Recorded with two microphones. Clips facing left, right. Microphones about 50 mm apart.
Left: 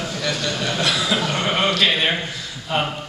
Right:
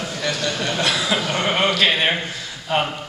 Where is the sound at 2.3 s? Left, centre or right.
Right.